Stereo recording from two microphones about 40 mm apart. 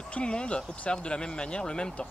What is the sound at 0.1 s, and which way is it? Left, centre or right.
Speech, left.